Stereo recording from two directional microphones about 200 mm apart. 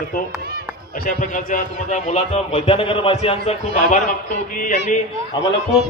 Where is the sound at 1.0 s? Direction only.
40° left (ahead or behind).